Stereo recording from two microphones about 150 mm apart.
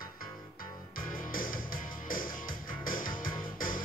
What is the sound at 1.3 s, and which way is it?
Music, 70° left (ahead or behind).